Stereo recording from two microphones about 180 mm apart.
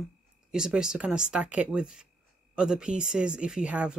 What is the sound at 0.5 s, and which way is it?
Speech, 5° right (ahead or behind).